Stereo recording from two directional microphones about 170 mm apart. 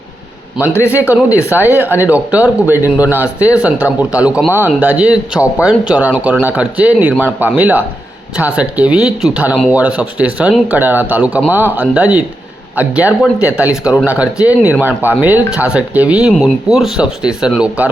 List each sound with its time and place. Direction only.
1.5 s speech: 10° right (ahead or behind)